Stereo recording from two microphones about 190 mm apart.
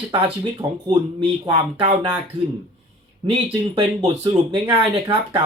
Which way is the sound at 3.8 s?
30° right (ahead or behind).